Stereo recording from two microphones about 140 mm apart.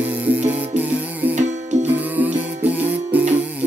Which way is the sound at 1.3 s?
60° right (ahead or behind).